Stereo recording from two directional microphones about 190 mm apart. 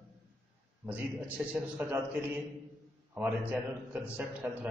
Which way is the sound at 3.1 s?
10° right (ahead or behind).